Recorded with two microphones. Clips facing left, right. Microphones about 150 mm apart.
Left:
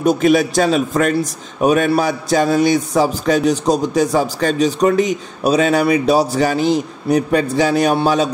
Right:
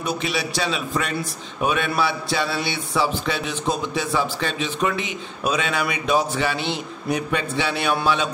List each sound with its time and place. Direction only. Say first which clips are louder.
0.0 s a man's voice: left 12 dB; 45° left (ahead or behind)